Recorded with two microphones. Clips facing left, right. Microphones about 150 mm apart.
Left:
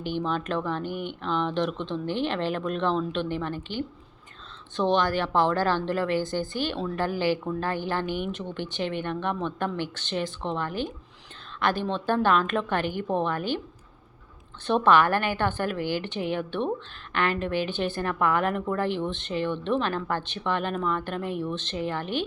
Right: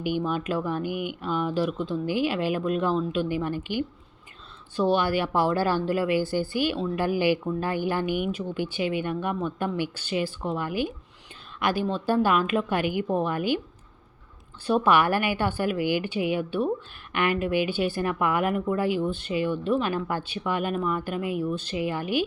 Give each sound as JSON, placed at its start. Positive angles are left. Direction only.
{"t": 0.0, "sound": "speech", "side_deg": -10}
{"t": 14.7, "sound": "speech", "side_deg": -10}